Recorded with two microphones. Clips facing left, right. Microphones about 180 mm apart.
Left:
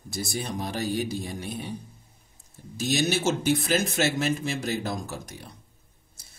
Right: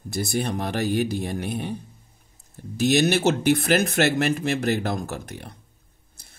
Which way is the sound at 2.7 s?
60° right (ahead or behind).